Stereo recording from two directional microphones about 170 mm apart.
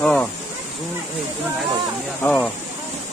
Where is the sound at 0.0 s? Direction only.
5° left (ahead or behind).